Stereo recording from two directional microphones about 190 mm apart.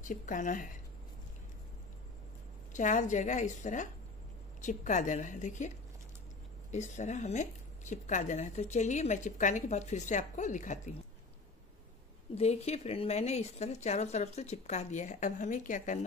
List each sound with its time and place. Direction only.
0.0 s speech: 45° left (ahead or behind)
2.7 s a woman's voice: 40° left (ahead or behind)
6.7 s a woman's voice: 40° left (ahead or behind)
12.4 s a woman's voice: 35° left (ahead or behind)